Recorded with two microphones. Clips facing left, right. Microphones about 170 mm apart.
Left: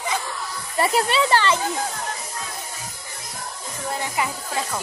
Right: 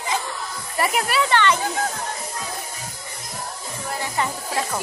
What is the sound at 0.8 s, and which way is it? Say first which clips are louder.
Speech: left 2 dB; 30° left (ahead or behind).